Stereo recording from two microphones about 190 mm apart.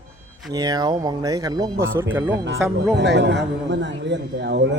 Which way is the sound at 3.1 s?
65° right (ahead or behind).